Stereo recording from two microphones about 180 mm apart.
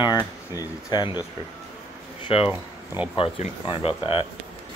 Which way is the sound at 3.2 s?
30° left (ahead or behind).